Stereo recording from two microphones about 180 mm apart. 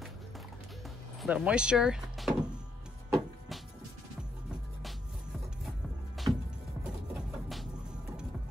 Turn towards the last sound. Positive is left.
turn(degrees=0)  # may be behind; listen again after turning